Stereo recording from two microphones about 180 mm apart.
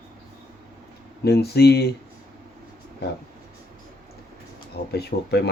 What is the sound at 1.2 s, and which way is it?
Speech, 60° left (ahead or behind).